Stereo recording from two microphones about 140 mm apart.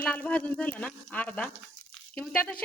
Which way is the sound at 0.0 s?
10° left (ahead or behind).